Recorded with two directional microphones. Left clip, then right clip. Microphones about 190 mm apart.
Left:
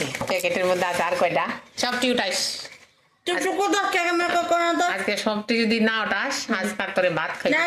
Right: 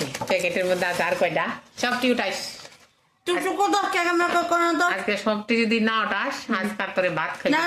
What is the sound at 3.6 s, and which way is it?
Speech, 30° right (ahead or behind).